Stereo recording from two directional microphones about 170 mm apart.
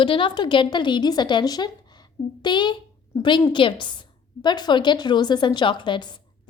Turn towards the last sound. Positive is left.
turn(degrees=25)  # may be behind; listen again after turning